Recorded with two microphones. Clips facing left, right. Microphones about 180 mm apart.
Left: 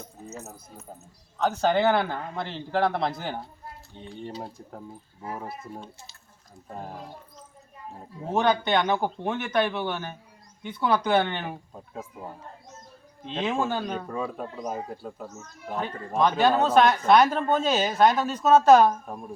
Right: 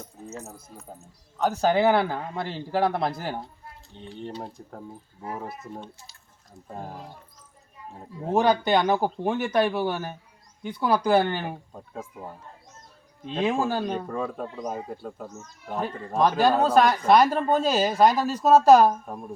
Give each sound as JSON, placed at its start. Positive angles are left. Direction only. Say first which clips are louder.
{"t": 0.3, "sound": "speech", "louder": "right 2 dB", "side_deg": 5}
{"t": 8.3, "sound": "speech", "louder": "right 2 dB", "side_deg": -10}
{"t": 13.2, "sound": "speech", "louder": "right 2 dB", "side_deg": -5}
{"t": 14.1, "sound": "speech", "louder": "right 1 dB", "side_deg": 5}